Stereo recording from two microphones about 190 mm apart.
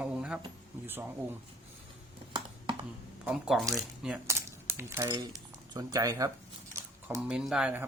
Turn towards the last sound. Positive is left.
turn(degrees=-5)  # may be behind; listen again after turning